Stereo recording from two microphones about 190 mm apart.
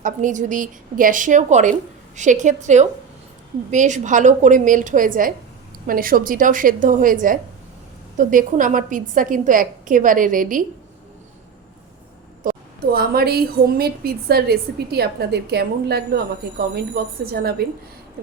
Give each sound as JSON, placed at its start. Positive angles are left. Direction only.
{"t": 0.0, "sound": "a woman's voice", "side_deg": -40}
{"t": 12.4, "sound": "a woman's voice", "side_deg": -50}